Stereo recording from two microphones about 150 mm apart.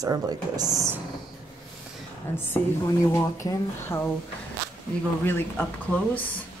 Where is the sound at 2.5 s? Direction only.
20° left (ahead or behind).